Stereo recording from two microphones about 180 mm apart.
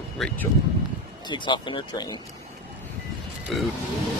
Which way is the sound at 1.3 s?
25° left (ahead or behind).